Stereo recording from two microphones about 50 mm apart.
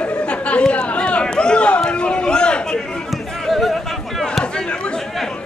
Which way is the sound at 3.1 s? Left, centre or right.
Centre.